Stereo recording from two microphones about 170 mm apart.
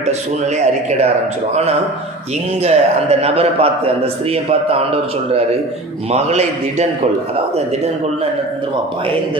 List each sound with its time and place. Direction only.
0.0 s a man's voice: 40° right (ahead or behind)
2.6 s a man's voice: 35° right (ahead or behind)